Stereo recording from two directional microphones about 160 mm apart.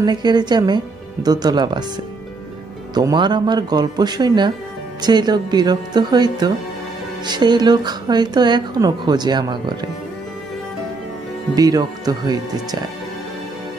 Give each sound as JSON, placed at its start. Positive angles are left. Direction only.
{"t": 0.0, "sound": "speech", "side_deg": -25}
{"t": 2.9, "sound": "speech", "side_deg": -25}
{"t": 11.5, "sound": "speech", "side_deg": -25}